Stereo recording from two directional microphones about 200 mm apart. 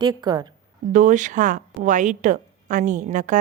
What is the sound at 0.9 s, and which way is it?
A woman's voice, 40° right (ahead or behind).